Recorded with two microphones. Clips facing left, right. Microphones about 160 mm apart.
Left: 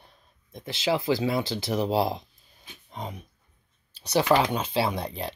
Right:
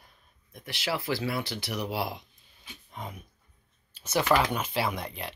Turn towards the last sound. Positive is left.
turn(degrees=35)  # may be behind; listen again after turning